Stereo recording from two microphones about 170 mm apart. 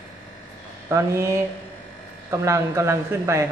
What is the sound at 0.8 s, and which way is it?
Speech, 15° right (ahead or behind).